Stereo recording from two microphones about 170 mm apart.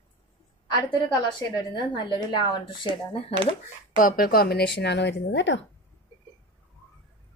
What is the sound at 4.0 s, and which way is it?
Speech, 60° left (ahead or behind).